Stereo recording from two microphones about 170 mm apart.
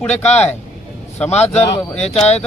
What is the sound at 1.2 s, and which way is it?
Speech, 40° left (ahead or behind).